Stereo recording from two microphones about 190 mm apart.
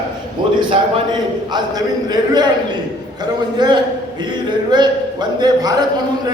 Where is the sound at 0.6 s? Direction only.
25° right (ahead or behind).